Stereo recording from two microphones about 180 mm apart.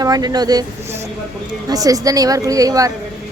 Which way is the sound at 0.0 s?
20° right (ahead or behind).